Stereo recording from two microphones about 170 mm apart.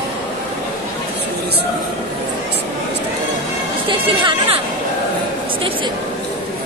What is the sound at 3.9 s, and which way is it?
Speech, 30° right (ahead or behind).